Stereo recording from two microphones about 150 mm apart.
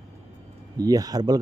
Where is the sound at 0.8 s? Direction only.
25° right (ahead or behind).